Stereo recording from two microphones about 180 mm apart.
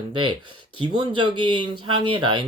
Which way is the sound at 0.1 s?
25° right (ahead or behind).